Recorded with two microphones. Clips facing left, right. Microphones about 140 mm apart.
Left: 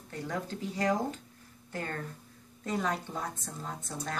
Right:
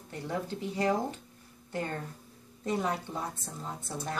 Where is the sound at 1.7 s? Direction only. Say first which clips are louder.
Right 2 dB; 20° right (ahead or behind).